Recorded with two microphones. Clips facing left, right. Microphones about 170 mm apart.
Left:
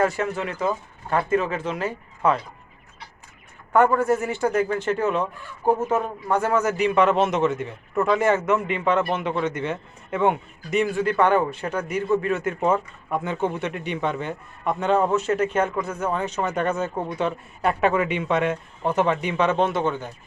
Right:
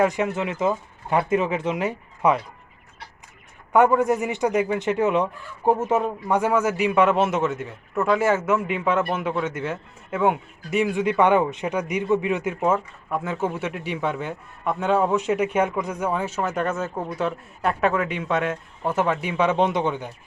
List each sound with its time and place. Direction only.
0.0 s speech: 15° right (ahead or behind)
3.9 s speech: 15° right (ahead or behind)
6.2 s speech: 10° right (ahead or behind)